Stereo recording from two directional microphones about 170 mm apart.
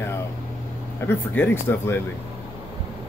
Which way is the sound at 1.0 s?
10° left (ahead or behind).